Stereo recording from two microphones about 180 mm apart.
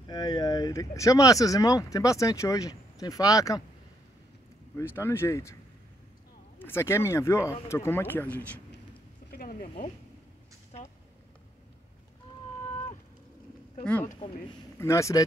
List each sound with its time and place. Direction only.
0.0 s speech: 25° left (ahead or behind)
4.7 s speech: 15° left (ahead or behind)
6.6 s speech: 15° left (ahead or behind)
9.3 s a sound: 55° left (ahead or behind)
14.8 s speech: 15° left (ahead or behind)